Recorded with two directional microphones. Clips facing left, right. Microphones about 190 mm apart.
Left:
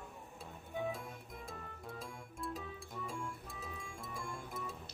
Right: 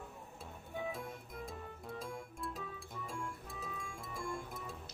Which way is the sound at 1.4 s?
Centre (ahead or behind).